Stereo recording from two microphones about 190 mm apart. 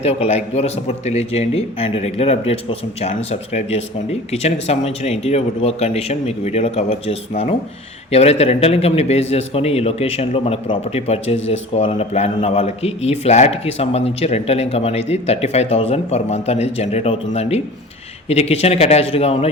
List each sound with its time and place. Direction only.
0.0 s speech: 30° left (ahead or behind)